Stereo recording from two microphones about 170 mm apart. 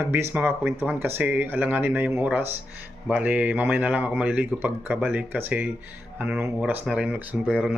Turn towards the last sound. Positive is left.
turn(degrees=-5)  # may be behind; listen again after turning